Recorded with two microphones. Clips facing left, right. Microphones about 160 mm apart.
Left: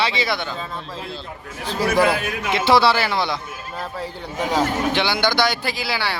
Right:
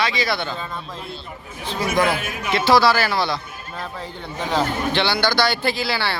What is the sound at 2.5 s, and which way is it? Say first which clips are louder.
Speech: even; 20° left (ahead or behind).